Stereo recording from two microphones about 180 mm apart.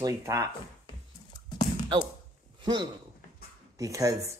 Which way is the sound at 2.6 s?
25° right (ahead or behind).